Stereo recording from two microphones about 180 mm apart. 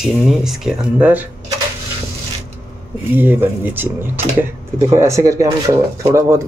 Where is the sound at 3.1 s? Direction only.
10° right (ahead or behind).